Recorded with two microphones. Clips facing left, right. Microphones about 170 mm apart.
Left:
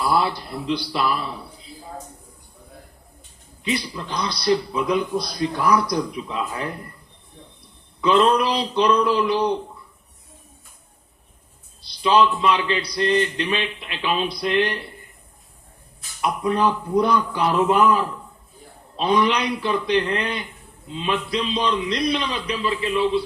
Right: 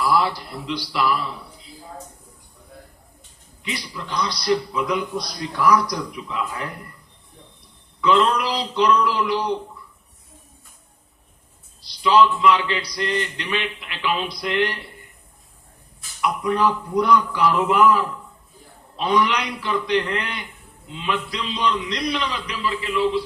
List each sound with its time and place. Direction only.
0.0 s a man's voice: 25° left (ahead or behind)
3.6 s a man's voice: 25° left (ahead or behind)
8.0 s a man's voice: 25° left (ahead or behind)
12.0 s a man's voice: 25° left (ahead or behind)
16.2 s a man's voice: 25° left (ahead or behind)
18.9 s a man's voice: 25° left (ahead or behind)